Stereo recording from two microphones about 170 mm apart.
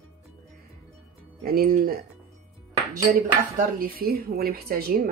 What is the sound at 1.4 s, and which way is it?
Speech, 60° right (ahead or behind).